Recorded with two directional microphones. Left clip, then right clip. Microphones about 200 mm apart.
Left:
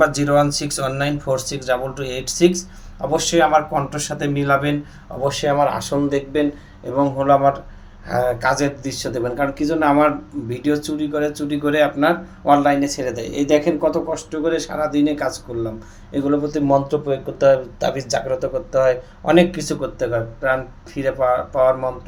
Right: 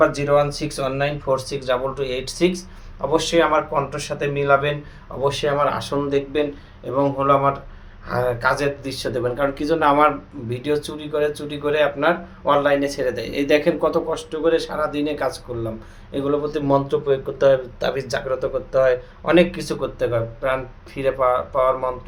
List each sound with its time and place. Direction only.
0.0 s speech: 25° left (ahead or behind); by 21.9 s 5° left (ahead or behind)